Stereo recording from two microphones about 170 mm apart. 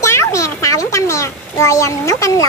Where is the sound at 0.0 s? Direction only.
15° left (ahead or behind).